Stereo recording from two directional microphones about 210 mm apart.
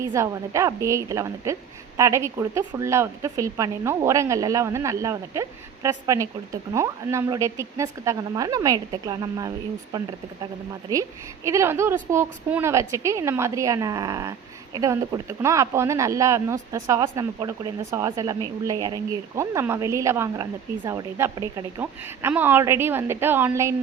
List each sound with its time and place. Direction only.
0.0 s speech: 15° right (ahead or behind)
11.4 s speech: 15° right (ahead or behind)